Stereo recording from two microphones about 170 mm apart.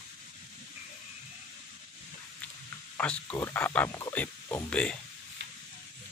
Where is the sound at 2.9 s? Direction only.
10° left (ahead or behind).